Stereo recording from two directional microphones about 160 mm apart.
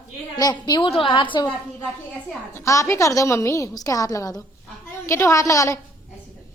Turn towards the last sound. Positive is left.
turn(degrees=20)  # may be behind; listen again after turning